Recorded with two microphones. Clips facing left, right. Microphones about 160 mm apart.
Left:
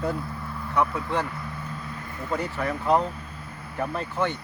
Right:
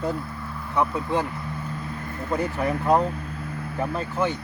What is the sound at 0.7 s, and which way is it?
Speech, 15° right (ahead or behind).